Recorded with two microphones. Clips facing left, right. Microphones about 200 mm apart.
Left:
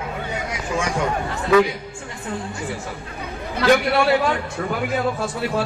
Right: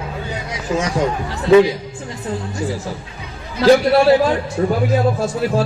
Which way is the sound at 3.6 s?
35° right (ahead or behind).